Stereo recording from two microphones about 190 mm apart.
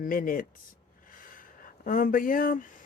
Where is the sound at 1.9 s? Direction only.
45° left (ahead or behind).